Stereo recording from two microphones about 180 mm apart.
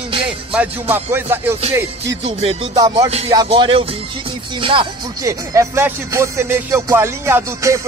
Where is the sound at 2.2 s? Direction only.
35° right (ahead or behind).